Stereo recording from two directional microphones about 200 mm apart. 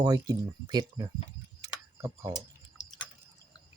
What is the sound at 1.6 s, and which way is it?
Tick-tock, 15° right (ahead or behind).